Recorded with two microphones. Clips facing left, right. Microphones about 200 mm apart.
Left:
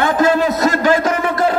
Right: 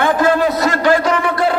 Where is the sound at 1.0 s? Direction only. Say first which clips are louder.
Even; 45° left (ahead or behind).